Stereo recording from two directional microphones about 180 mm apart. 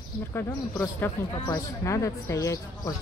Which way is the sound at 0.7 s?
10° left (ahead or behind).